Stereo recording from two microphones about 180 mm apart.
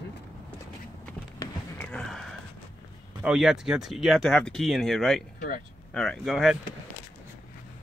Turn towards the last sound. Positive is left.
turn(degrees=0)  # may be behind; listen again after turning